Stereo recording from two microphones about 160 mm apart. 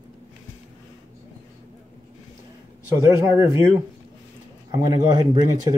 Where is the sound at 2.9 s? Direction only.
20° right (ahead or behind).